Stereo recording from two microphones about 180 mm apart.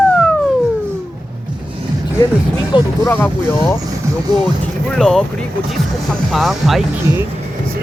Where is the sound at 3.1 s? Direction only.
10° left (ahead or behind).